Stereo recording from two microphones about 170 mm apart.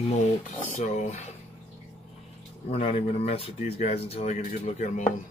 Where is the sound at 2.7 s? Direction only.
35° left (ahead or behind).